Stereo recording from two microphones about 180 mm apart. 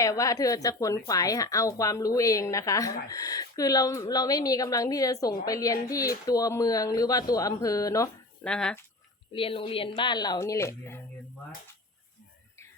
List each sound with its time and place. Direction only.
0.0 s a woman's voice: 20° left (ahead or behind)
8.4 s speech: 5° left (ahead or behind)
9.3 s a woman's voice: 30° left (ahead or behind); by 11.0 s 15° left (ahead or behind)